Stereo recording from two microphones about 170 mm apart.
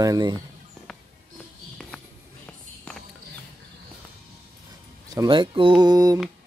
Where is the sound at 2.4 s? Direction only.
5° left (ahead or behind).